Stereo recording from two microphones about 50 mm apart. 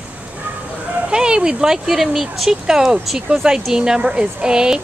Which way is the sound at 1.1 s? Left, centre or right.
Centre.